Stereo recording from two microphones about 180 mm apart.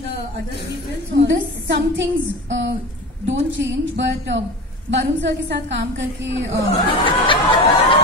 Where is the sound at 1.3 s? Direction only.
85° right.